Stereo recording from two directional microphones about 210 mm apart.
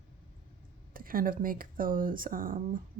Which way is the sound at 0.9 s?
45° right (ahead or behind).